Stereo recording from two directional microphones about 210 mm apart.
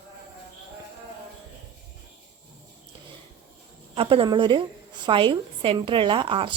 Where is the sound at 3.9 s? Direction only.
25° right (ahead or behind).